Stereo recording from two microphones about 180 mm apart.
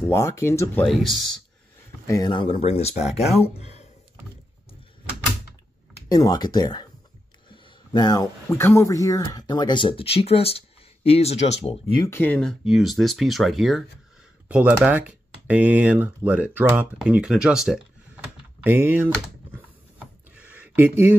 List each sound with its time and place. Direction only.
0.1 s speech: 15° left (ahead or behind)
2.0 s speech: 20° left (ahead or behind)
6.1 s speech: 20° left (ahead or behind)
12.1 s speech: 10° left (ahead or behind); by 19.6 s 10° right (ahead or behind)
20.3 s a sound: 10° right (ahead or behind)